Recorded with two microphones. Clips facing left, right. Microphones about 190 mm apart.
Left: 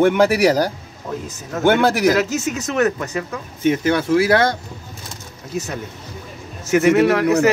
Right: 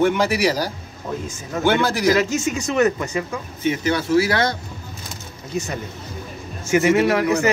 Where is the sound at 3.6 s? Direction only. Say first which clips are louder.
Left 4 dB; 50° left (ahead or behind).